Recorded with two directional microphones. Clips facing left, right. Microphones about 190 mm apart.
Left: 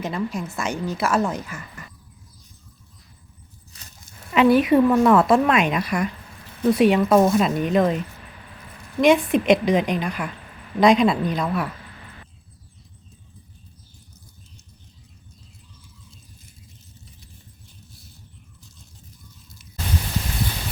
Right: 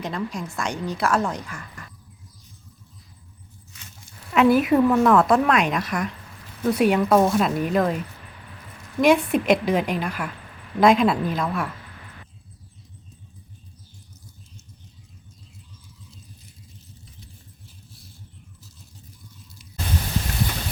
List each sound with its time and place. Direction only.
0.0 s a woman's voice: 5° left (ahead or behind)
3.7 s a sound: 40° left (ahead or behind)
4.4 s a woman's voice: centre (ahead or behind)
9.0 s a woman's voice: centre (ahead or behind)